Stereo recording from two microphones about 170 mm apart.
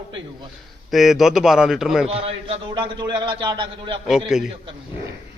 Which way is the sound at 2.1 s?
35° right (ahead or behind).